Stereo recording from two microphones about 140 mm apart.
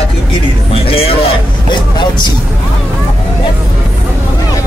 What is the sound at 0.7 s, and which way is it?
Speech, 45° left (ahead or behind).